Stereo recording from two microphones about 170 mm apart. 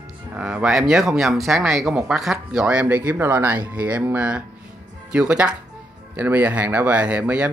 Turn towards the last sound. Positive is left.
turn(degrees=-10)  # may be behind; listen again after turning